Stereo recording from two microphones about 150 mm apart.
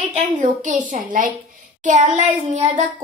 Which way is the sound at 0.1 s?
45° right (ahead or behind).